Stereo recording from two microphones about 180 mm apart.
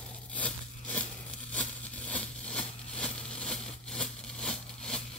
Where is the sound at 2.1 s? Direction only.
5° left (ahead or behind).